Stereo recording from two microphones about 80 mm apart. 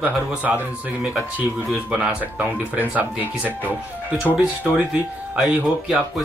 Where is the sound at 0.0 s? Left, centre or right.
Centre.